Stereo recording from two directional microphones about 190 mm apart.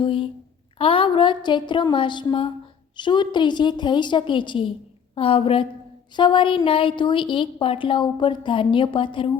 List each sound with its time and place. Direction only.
0.0 s a woman's voice: 25° left (ahead or behind)